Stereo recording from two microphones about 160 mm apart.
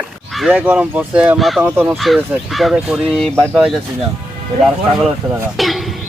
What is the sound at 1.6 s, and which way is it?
Speech, 10° right (ahead or behind).